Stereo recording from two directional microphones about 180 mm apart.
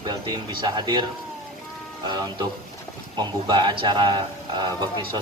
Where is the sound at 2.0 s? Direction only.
20° right (ahead or behind).